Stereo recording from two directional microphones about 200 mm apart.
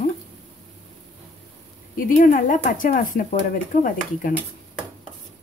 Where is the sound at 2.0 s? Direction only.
45° left (ahead or behind).